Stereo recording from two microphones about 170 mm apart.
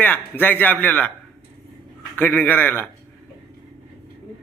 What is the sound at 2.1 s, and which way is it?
Speech, 10° left (ahead or behind).